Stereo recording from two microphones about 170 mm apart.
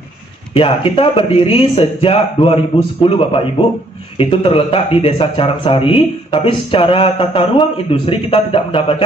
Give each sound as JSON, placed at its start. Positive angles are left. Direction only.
{"t": 0.6, "sound": "speech", "side_deg": 30}